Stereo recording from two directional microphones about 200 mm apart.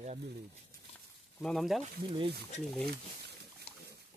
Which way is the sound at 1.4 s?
Centre (ahead or behind).